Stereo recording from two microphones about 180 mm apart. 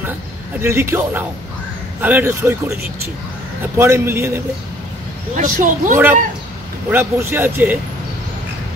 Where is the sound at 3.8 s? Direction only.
15° right (ahead or behind).